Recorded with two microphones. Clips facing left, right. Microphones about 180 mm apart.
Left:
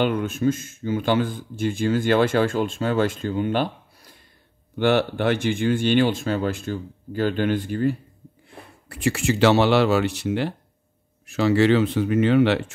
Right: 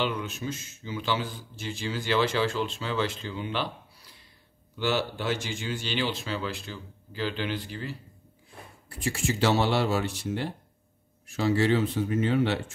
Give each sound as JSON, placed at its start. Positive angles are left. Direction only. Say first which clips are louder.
{"t": 0.0, "sound": "speech", "louder": "left 9 dB", "side_deg": 50}
{"t": 8.5, "sound": "speech", "louder": "left 4 dB", "side_deg": 70}